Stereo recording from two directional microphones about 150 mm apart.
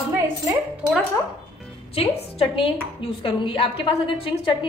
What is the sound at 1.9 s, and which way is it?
A woman's voice, 40° left (ahead or behind).